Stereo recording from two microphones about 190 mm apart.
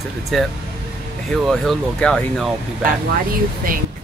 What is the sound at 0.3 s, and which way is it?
Speech, centre (ahead or behind).